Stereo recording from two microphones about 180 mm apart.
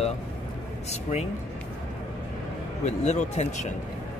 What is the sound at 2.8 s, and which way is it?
Speech, 40° left (ahead or behind).